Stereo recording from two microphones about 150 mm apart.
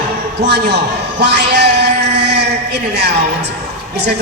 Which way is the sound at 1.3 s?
90° right.